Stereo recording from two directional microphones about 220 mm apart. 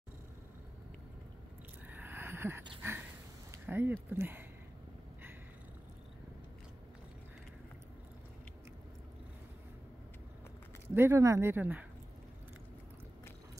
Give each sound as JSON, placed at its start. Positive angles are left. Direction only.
{"t": 1.9, "sound": "a sound", "side_deg": -10}
{"t": 2.8, "sound": "dog", "side_deg": -10}
{"t": 3.5, "sound": "speech", "side_deg": -10}
{"t": 11.0, "sound": "speech", "side_deg": -10}